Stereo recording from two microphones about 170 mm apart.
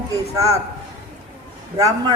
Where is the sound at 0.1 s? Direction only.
20° right (ahead or behind).